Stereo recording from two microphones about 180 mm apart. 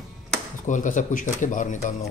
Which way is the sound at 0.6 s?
45° left (ahead or behind).